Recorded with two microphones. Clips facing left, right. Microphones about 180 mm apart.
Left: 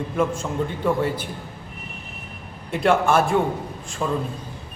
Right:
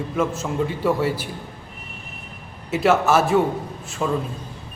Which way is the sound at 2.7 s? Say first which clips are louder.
Right 1 dB; 5° right (ahead or behind).